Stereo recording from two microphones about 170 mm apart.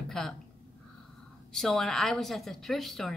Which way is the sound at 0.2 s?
5° left (ahead or behind).